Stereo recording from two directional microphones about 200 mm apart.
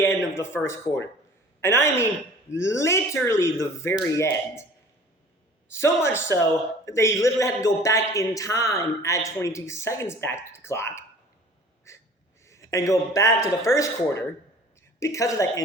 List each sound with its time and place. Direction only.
0.0 s a sound: 10° left (ahead or behind)
1.6 s speech: 10° left (ahead or behind)
5.7 s speech: 15° left (ahead or behind)
11.9 s wheeze: 15° left (ahead or behind)
12.5 s speech: 15° left (ahead or behind)